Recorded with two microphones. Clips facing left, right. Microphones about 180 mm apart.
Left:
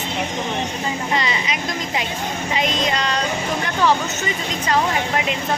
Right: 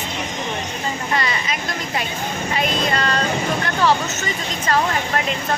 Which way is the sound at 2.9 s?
15° left (ahead or behind).